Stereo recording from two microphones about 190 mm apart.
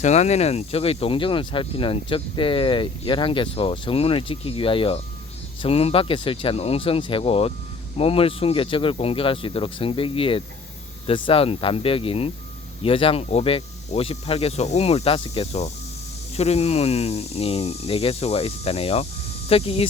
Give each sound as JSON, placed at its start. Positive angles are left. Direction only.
{"t": 0.0, "sound": "speech", "side_deg": 35}